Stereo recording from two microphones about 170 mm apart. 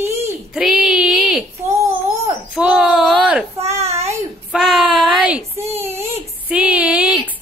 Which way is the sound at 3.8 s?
40° right (ahead or behind).